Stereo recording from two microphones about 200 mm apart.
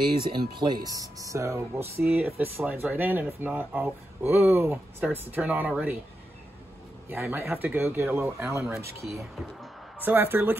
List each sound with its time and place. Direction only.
0.4 s speech: 20° right (ahead or behind)
7.1 s speech: 10° right (ahead or behind)
9.6 s music: 10° right (ahead or behind)